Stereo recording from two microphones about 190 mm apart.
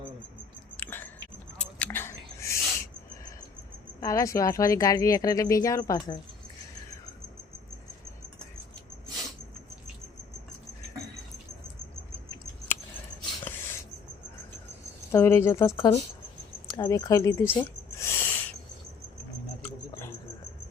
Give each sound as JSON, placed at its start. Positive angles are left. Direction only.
{"t": 0.8, "sound": "biting", "side_deg": 10}
{"t": 1.5, "sound": "owl", "side_deg": 10}
{"t": 4.0, "sound": "speech", "side_deg": 15}
{"t": 15.1, "sound": "speech", "side_deg": 15}
{"t": 16.7, "sound": "a sound", "side_deg": 20}
{"t": 19.6, "sound": "a sound", "side_deg": 10}